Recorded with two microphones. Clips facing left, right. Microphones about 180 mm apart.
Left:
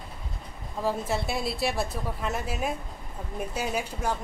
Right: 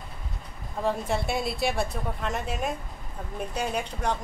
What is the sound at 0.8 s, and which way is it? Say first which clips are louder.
Speech: right 1 dB; centre (ahead or behind).